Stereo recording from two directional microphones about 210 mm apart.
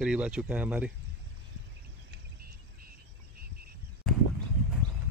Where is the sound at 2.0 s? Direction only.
45° right (ahead or behind).